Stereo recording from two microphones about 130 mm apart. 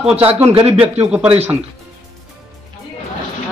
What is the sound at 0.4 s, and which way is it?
Speech, 50° right (ahead or behind).